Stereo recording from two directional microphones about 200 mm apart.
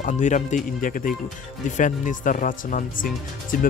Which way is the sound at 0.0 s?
40° left (ahead or behind).